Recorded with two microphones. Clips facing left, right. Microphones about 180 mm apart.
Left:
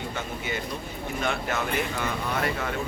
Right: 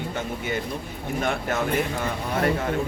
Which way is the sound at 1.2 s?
45° right (ahead or behind).